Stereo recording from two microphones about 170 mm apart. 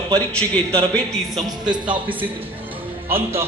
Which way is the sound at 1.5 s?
25° right (ahead or behind).